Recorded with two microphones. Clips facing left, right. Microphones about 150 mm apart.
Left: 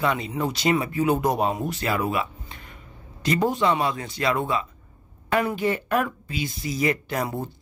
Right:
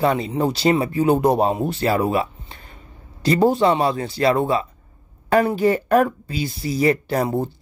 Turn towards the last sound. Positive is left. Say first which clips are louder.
# right 7 dB
turn(degrees=-35)  # may be behind; listen again after turning